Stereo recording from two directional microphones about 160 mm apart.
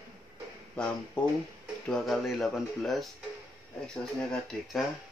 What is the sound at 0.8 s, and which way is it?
Speech, 5° left (ahead or behind).